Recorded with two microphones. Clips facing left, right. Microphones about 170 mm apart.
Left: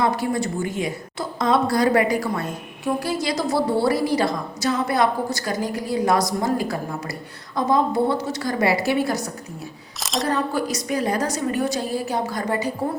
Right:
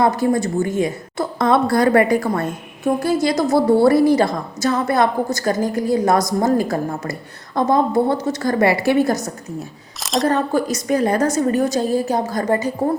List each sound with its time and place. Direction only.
0.0 s a woman's voice: 45° right (ahead or behind)
1.4 s a woman's voice: 55° right (ahead or behind)
10.0 s speech: centre (ahead or behind)
10.2 s a woman's voice: 50° right (ahead or behind)